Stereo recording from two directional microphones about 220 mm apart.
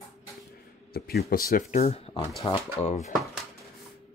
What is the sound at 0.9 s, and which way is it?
Speech, 45° left (ahead or behind).